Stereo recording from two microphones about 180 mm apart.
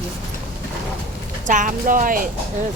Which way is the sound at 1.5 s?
45° right (ahead or behind).